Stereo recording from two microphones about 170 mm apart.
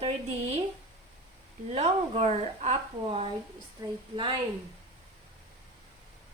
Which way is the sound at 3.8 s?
20° right (ahead or behind).